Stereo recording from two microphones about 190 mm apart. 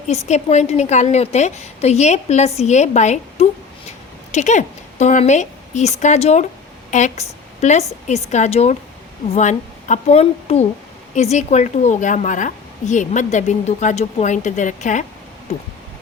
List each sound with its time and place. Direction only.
0.1 s a woman's voice: 35° left (ahead or behind)